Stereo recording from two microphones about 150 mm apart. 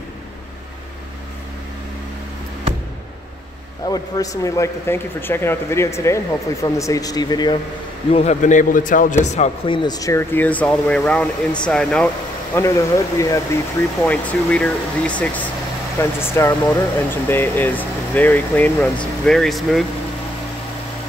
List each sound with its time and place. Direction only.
3.8 s speech: 25° left (ahead or behind)
8.1 s a man's voice: 45° left (ahead or behind)
9.7 s speech: 25° left (ahead or behind); by 12.1 s 5° left (ahead or behind)
12.5 s speech: 20° left (ahead or behind)
14.0 s speech: 10° left (ahead or behind)